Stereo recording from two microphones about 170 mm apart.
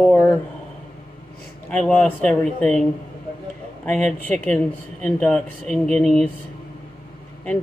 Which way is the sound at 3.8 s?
10° left (ahead or behind).